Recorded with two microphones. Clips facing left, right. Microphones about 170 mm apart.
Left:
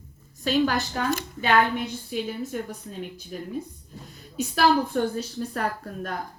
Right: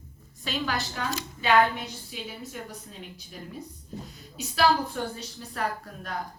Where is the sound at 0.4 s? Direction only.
45° left (ahead or behind).